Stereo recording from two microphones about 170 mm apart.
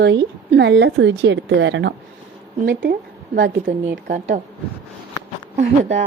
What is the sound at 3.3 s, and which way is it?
Speech, 55° right (ahead or behind).